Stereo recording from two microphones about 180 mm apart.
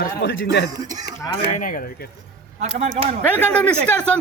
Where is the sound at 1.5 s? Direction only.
50° left (ahead or behind).